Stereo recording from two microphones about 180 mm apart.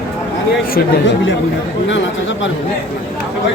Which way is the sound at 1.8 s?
90° left.